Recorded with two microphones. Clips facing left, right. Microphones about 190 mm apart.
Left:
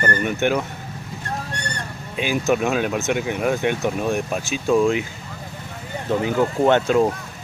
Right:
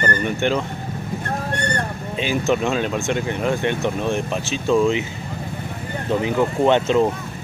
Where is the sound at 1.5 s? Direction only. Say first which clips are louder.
Right 7 dB; 55° right (ahead or behind).